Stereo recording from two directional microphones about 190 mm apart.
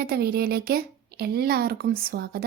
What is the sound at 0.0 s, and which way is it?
Speech, 55° right (ahead or behind).